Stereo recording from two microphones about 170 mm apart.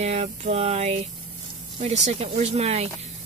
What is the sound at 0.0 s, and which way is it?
Speech, 40° right (ahead or behind).